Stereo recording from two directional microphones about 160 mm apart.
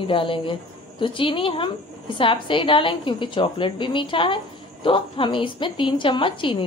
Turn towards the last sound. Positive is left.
turn(degrees=30)  # may be behind; listen again after turning